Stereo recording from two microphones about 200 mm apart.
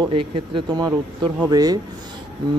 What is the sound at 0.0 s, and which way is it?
A man's voice, 25° right (ahead or behind).